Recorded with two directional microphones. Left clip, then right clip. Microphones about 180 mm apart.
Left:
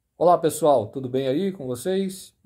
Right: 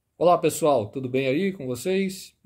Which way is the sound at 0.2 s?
15° right (ahead or behind).